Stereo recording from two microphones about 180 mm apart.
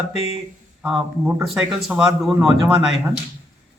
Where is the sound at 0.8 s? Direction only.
Centre (ahead or behind).